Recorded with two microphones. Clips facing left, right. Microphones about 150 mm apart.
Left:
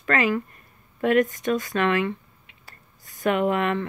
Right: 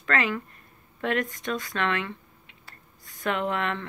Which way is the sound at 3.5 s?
10° left (ahead or behind).